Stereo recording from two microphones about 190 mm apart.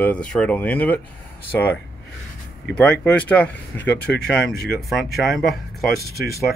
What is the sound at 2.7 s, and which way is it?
Speech, 5° left (ahead or behind).